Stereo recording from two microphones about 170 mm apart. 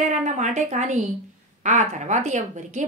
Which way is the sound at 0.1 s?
45° right (ahead or behind).